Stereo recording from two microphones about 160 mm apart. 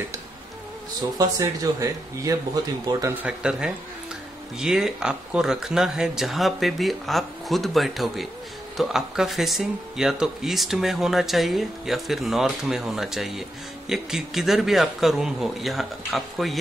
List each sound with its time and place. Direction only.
1.1 s speech: 20° right (ahead or behind); by 16.5 s centre (ahead or behind)